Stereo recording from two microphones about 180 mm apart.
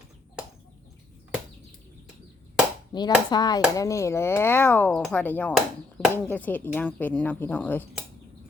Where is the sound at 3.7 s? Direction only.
20° left (ahead or behind).